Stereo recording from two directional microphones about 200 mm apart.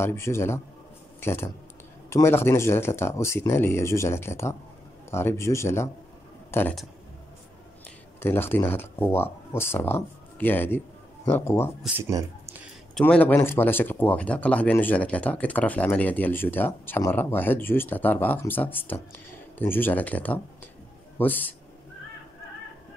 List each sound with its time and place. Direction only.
0.0 s speech: 10° left (ahead or behind)
8.2 s speech: 10° left (ahead or behind)
12.0 s speech: 15° right (ahead or behind)
12.9 s speech: 5° left (ahead or behind)